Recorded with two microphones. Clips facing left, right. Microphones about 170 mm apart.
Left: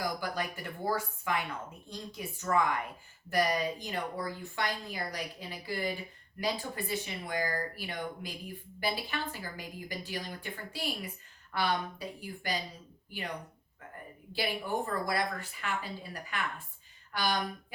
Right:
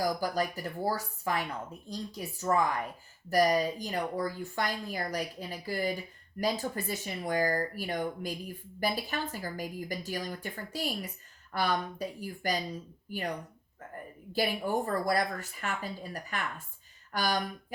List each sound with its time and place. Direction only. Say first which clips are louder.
0.2 s a woman's voice: right 5 dB; 40° right (ahead or behind)
14.3 s a woman's voice: right 3 dB; 45° right (ahead or behind)